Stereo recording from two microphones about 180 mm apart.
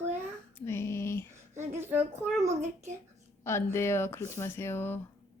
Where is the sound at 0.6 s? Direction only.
15° left (ahead or behind).